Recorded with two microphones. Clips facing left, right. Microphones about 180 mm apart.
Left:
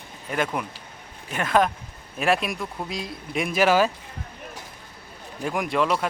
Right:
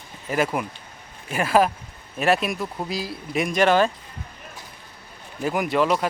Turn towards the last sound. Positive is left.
turn(degrees=0)  # may be behind; listen again after turning